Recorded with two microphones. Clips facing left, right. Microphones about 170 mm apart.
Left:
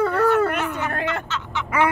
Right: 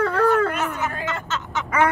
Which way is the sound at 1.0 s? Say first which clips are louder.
Left 1 dB; 45° right (ahead or behind).